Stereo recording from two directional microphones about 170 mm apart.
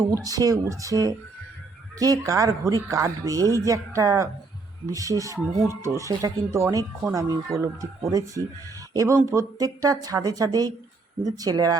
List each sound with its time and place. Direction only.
0.0 s speech: 20° right (ahead or behind)